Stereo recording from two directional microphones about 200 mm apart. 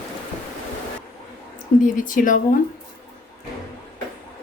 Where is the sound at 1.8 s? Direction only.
40° left (ahead or behind).